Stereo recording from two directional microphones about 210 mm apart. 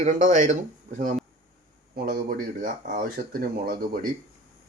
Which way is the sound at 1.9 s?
40° right (ahead or behind).